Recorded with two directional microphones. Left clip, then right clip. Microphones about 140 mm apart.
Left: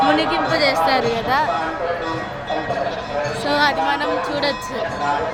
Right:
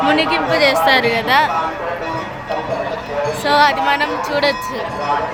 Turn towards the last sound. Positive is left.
turn(degrees=-15)  # may be behind; listen again after turning